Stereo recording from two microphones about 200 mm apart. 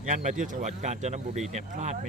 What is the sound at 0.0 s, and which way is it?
A man's voice, 40° right (ahead or behind).